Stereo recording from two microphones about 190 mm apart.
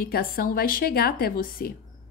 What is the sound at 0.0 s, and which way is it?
A woman's voice, 50° left (ahead or behind).